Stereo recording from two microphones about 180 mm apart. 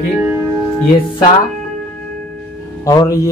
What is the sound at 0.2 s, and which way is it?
Music, 15° right (ahead or behind).